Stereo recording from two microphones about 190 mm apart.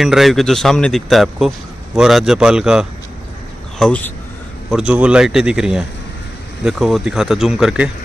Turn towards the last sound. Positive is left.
turn(degrees=-5)  # may be behind; listen again after turning